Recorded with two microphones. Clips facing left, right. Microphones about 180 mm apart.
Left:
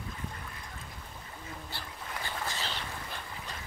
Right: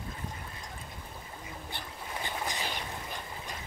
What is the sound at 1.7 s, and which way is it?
Boat, 20° right (ahead or behind).